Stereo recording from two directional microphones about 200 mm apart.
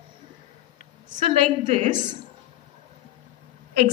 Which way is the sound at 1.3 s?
30° right (ahead or behind).